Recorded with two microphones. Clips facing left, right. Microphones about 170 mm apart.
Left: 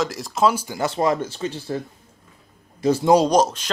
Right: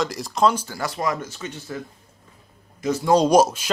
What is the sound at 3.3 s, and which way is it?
Speech, 10° right (ahead or behind).